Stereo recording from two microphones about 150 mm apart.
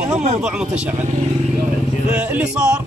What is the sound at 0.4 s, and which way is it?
Speech, 5° right (ahead or behind).